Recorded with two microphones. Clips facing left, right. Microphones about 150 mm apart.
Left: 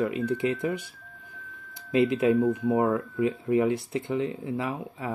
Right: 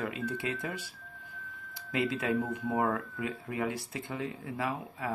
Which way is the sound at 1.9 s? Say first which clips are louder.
Left 8 dB; 25° left (ahead or behind).